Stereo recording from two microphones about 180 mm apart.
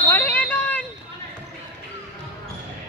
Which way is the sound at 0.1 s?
10° left (ahead or behind).